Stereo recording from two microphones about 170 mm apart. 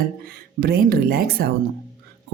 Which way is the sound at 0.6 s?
60° right (ahead or behind).